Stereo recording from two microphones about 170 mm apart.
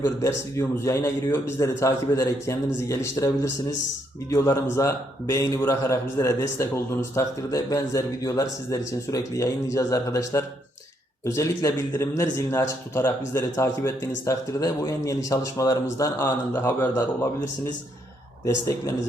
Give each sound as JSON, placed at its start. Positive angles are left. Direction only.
{"t": 0.0, "sound": "speech", "side_deg": 15}
{"t": 18.4, "sound": "speech", "side_deg": 20}